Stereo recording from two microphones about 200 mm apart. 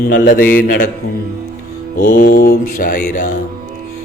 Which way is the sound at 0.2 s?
40° left (ahead or behind).